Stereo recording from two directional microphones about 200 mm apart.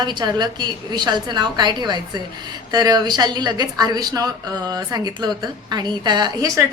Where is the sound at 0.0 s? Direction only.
20° right (ahead or behind).